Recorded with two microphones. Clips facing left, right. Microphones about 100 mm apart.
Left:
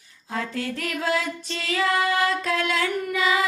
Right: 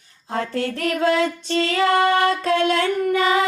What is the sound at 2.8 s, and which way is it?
Singing, 45° right (ahead or behind).